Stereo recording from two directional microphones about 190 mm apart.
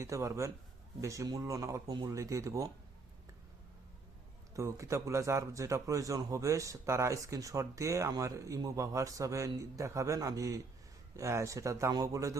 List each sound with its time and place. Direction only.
0.0 s speech: 15° right (ahead or behind)
4.5 s speech: 15° right (ahead or behind)